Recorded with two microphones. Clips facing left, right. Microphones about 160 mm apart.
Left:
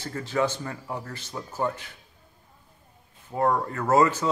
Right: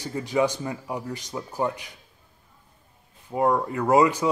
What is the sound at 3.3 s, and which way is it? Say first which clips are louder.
A man's voice: right 2 dB; 10° right (ahead or behind).